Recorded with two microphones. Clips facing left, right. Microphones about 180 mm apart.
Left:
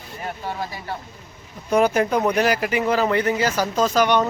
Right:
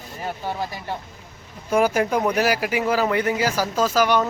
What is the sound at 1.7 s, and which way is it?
Speech, 5° right (ahead or behind).